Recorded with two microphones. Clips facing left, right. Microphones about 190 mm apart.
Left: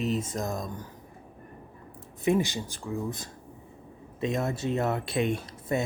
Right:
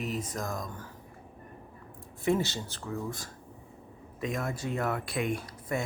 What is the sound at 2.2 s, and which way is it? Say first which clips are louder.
Speech: left 3 dB; 15° left (ahead or behind).